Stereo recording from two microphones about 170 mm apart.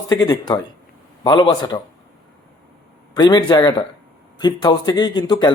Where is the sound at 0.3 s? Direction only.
25° left (ahead or behind).